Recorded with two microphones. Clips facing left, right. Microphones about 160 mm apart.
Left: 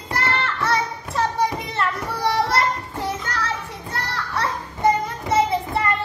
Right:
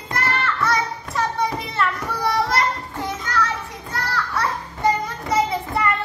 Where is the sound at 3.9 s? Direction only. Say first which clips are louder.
Right 2 dB; 30° left (ahead or behind).